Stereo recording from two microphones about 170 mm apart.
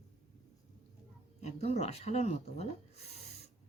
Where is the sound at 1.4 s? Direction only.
40° left (ahead or behind).